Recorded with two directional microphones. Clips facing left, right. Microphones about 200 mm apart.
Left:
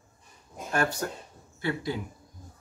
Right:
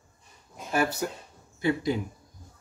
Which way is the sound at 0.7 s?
5° right (ahead or behind).